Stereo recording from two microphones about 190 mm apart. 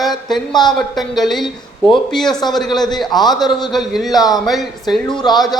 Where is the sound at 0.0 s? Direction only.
Centre (ahead or behind).